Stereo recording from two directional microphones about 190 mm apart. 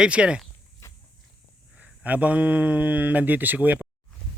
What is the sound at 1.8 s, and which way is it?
Speech, 5° right (ahead or behind).